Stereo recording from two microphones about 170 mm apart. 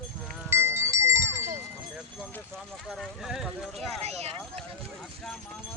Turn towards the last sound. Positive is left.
turn(degrees=-40)  # may be behind; listen again after turning